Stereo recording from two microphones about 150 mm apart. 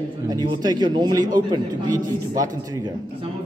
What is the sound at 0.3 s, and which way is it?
Speech, 25° right (ahead or behind).